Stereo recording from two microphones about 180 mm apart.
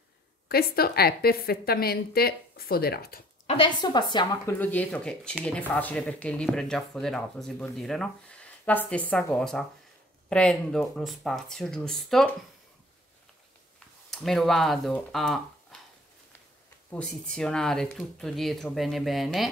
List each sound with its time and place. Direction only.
0.5 s a woman's voice: 60° left (ahead or behind)
3.4 s a woman's voice: 30° left (ahead or behind)
4.6 s speech: 10° left (ahead or behind)
14.1 s speech: centre (ahead or behind)
17.3 s speech: 5° left (ahead or behind)